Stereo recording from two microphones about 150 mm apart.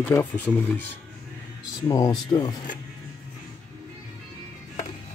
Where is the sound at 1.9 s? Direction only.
25° left (ahead or behind).